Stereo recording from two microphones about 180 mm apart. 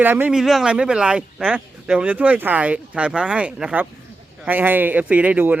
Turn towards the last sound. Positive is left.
turn(degrees=-10)  # may be behind; listen again after turning